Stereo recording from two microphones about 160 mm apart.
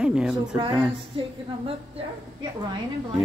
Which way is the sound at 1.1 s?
35° right (ahead or behind).